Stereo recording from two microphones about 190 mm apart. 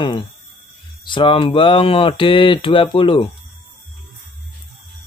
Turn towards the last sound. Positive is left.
turn(degrees=25)  # may be behind; listen again after turning